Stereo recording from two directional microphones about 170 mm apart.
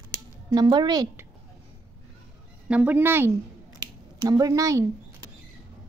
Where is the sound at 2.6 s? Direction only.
10° right (ahead or behind).